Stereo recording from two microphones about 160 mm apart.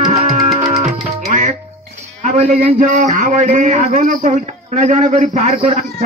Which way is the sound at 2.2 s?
55° right (ahead or behind).